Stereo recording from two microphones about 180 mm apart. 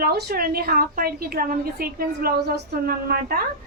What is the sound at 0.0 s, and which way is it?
A woman's voice, 60° right (ahead or behind).